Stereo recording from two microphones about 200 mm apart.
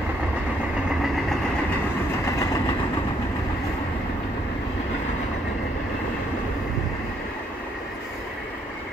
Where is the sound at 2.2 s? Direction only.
15° left (ahead or behind).